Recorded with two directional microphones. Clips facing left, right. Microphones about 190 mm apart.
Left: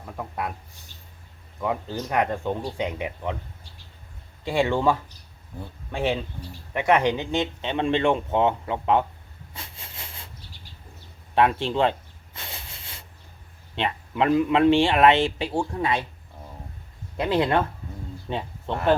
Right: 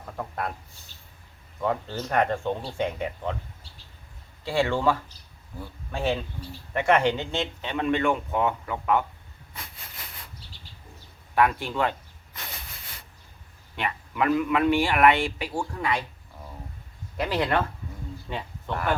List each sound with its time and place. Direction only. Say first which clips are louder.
1.6 s speech: even; 15° left (ahead or behind)
4.4 s speech: left 2 dB; 20° left (ahead or behind)
9.6 s hiss: left 1 dB; 25° left (ahead or behind)
11.3 s a sound: left 3 dB; 25° left (ahead or behind)
13.7 s speech: left 3 dB; 25° left (ahead or behind)
17.2 s speech: left 3 dB; 20° left (ahead or behind)